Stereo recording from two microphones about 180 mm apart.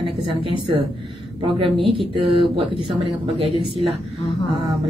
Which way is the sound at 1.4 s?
30° right (ahead or behind).